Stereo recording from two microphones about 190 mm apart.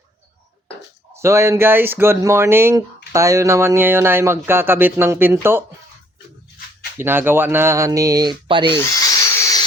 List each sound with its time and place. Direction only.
1.1 s speech: 15° right (ahead or behind)
7.0 s speech: 10° right (ahead or behind)
8.8 s drill: 15° left (ahead or behind)